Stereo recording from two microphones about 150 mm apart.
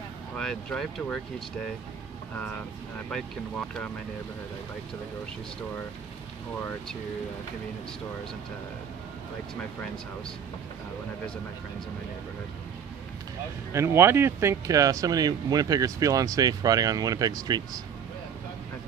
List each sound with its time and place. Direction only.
0.4 s speech: 5° left (ahead or behind)
2.3 s speech: 10° left (ahead or behind)
13.7 s speech: 15° right (ahead or behind)